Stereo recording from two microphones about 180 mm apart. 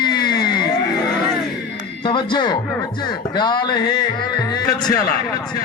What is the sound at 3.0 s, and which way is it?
Speech, 25° left (ahead or behind).